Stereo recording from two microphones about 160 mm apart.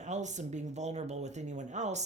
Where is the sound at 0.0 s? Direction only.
50° right (ahead or behind).